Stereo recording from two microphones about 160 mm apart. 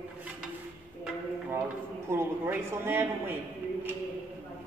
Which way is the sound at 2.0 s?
15° right (ahead or behind).